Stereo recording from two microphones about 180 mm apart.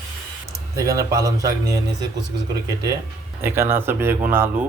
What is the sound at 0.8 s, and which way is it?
A man's voice, 20° right (ahead or behind).